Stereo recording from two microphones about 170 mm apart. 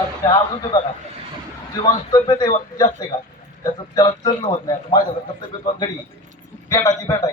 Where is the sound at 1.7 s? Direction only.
25° left (ahead or behind).